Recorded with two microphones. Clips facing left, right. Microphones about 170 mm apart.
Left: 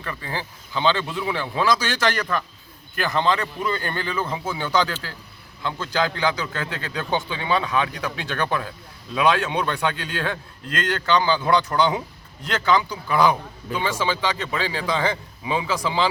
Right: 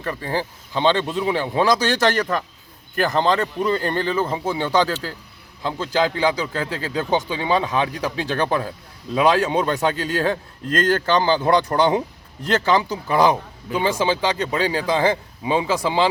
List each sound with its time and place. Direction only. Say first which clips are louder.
0.0 s a man's voice: right 6 dB; 40° right (ahead or behind)
1.5 s a man's voice: right 3 dB; 40° right (ahead or behind)